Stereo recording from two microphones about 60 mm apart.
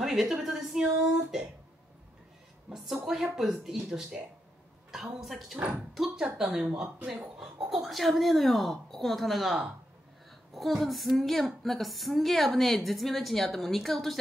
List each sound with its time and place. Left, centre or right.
0.0 s a woman's voice: centre
2.7 s a woman's voice: centre
6.5 s speech: centre
7.3 s a woman's voice: centre